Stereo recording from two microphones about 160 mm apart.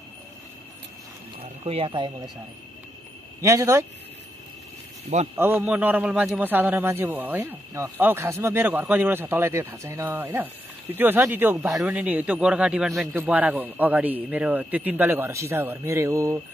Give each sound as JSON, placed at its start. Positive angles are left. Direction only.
{"t": 1.4, "sound": "speech", "side_deg": -35}
{"t": 3.3, "sound": "a man's voice", "side_deg": -15}
{"t": 5.4, "sound": "a man's voice", "side_deg": -10}